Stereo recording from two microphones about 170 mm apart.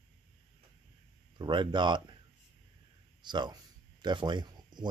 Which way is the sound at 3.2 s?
25° right (ahead or behind).